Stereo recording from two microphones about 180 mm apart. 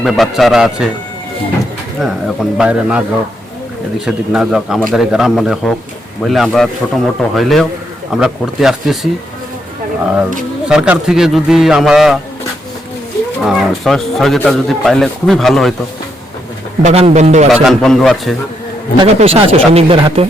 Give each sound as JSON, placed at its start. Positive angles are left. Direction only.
{"t": 0.0, "sound": "speech", "side_deg": 0}
{"t": 2.0, "sound": "speech", "side_deg": 0}
{"t": 4.0, "sound": "speech", "side_deg": -5}
{"t": 10.7, "sound": "speech", "side_deg": -5}
{"t": 13.4, "sound": "speech", "side_deg": 0}
{"t": 16.8, "sound": "speech", "side_deg": -35}
{"t": 17.5, "sound": "speech", "side_deg": 0}
{"t": 19.0, "sound": "speech", "side_deg": -30}